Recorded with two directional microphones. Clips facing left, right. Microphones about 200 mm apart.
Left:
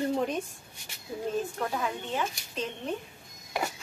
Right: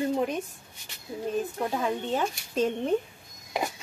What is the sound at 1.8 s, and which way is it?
Speech, 35° right (ahead or behind).